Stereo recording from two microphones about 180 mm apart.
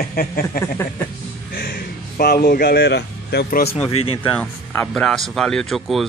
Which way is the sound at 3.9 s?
30° left (ahead or behind).